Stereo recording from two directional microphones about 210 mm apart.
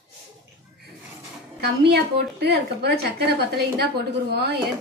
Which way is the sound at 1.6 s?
50° right (ahead or behind).